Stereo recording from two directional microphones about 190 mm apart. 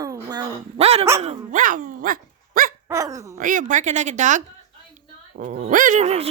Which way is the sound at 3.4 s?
45° right (ahead or behind).